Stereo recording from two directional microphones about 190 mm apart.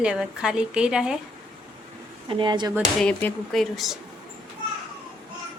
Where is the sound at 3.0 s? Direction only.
5° left (ahead or behind).